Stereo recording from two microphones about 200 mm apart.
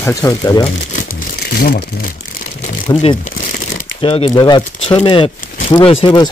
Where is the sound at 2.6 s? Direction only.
30° left (ahead or behind).